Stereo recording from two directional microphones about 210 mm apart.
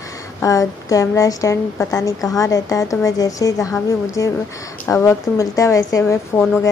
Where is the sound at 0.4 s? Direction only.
15° left (ahead or behind).